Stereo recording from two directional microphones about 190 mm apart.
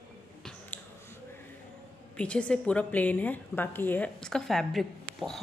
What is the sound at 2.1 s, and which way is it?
A woman's voice, 5° left (ahead or behind).